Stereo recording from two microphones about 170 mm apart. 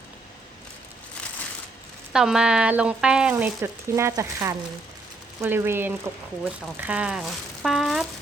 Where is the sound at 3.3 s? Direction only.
15° right (ahead or behind).